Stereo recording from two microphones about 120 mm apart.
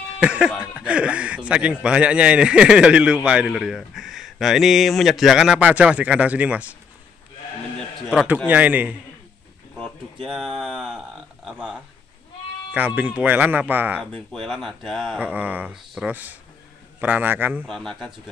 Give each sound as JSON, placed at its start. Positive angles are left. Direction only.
{"t": 0.2, "sound": "speech", "side_deg": -10}
{"t": 8.5, "sound": "speech", "side_deg": -10}
{"t": 10.2, "sound": "speech", "side_deg": -5}
{"t": 12.7, "sound": "speech", "side_deg": -15}
{"t": 14.1, "sound": "speech", "side_deg": 5}
{"t": 15.1, "sound": "speech", "side_deg": -10}
{"t": 16.1, "sound": "speech", "side_deg": -15}
{"t": 17.6, "sound": "speech", "side_deg": 5}